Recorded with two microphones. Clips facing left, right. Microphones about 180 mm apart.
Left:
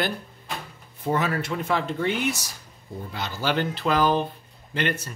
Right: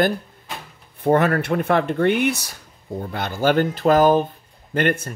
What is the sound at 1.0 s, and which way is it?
Speech, 60° right (ahead or behind).